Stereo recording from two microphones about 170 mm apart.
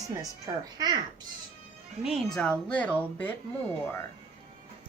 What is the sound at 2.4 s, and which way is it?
Speech, 5° left (ahead or behind).